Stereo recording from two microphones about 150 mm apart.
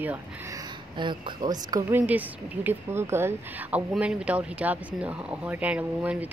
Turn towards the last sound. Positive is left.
turn(degrees=-10)  # may be behind; listen again after turning